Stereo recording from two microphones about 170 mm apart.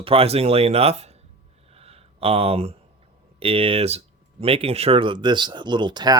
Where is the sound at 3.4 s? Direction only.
35° right (ahead or behind).